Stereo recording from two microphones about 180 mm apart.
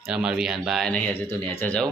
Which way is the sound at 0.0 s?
5° right (ahead or behind).